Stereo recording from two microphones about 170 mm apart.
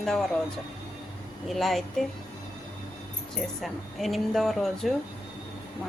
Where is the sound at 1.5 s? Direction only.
Centre (ahead or behind).